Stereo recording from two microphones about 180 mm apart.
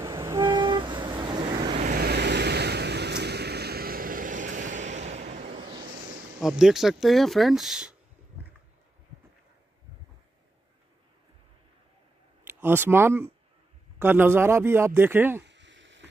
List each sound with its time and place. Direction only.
0.0 s vehicle: 20° right (ahead or behind)
1.8 s vehicle: 55° right (ahead or behind)
5.6 s a sound: 25° right (ahead or behind)
6.4 s speech: centre (ahead or behind)
12.4 s a man's voice: 10° right (ahead or behind)
15.4 s a sound: 80° right